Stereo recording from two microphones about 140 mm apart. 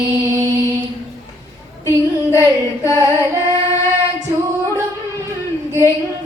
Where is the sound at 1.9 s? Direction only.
20° right (ahead or behind).